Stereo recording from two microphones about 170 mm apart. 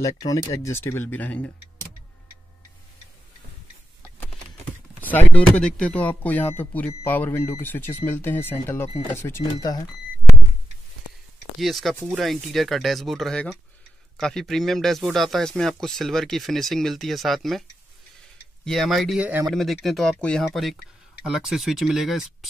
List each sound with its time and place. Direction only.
0.0 s speech: 20° left (ahead or behind)
5.1 s speech: 5° left (ahead or behind)
11.6 s speech: centre (ahead or behind)